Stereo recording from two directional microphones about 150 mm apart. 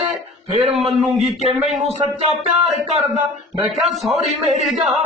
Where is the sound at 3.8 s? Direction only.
Centre (ahead or behind).